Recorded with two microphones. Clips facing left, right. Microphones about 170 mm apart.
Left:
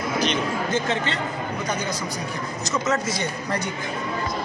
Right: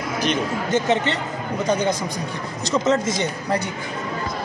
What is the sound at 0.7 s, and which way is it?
Speech, 20° right (ahead or behind).